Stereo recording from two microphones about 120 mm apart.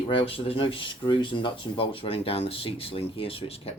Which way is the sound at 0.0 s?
50° left (ahead or behind).